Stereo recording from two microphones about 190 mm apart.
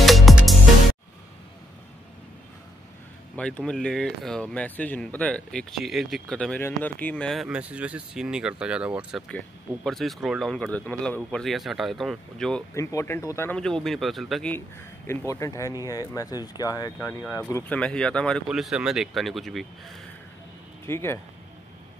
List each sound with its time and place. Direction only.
0.0 s music: centre (ahead or behind)
3.3 s speech: 5° left (ahead or behind)
12.7 s speech: 15° left (ahead or behind)
15.0 s speech: 15° left (ahead or behind)
20.8 s speech: 15° left (ahead or behind)